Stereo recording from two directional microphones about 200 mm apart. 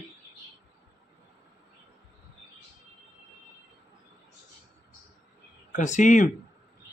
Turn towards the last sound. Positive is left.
turn(degrees=40)  # may be behind; listen again after turning